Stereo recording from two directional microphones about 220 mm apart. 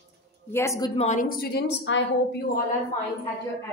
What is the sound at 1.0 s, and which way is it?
A woman's voice, 35° left (ahead or behind).